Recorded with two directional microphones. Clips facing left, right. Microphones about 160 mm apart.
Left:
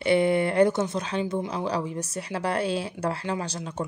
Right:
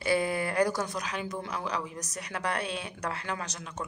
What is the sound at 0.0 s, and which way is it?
Speech, 25° left (ahead or behind).